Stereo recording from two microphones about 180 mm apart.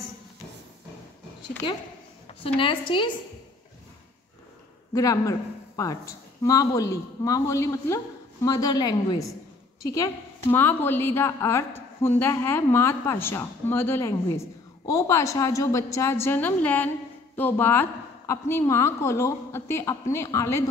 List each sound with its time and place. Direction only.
1.6 s a woman's voice: 30° left (ahead or behind)
4.9 s a woman's voice: 20° left (ahead or behind)